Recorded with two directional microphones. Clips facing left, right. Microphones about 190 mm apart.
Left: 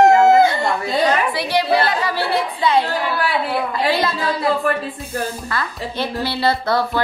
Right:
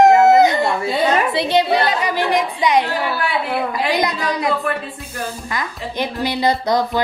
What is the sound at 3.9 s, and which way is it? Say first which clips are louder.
A woman's voice: even; 15° right (ahead or behind).